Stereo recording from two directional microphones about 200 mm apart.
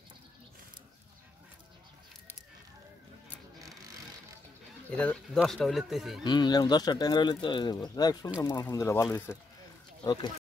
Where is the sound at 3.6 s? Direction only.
15° right (ahead or behind).